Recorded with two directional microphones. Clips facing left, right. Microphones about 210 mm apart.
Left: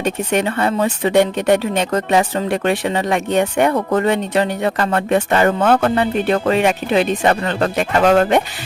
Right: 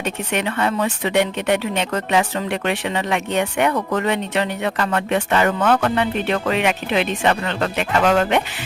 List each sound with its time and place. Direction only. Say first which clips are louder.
0.0 s speech: left 5 dB; 40° left (ahead or behind)